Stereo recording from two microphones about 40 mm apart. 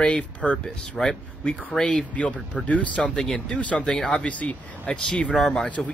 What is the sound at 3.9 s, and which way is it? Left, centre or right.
Speech, centre.